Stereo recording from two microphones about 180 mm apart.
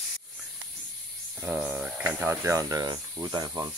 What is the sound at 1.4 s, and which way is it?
Speech, 5° right (ahead or behind).